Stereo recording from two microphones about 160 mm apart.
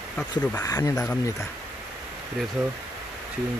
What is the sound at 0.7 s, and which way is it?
Speech, 20° left (ahead or behind).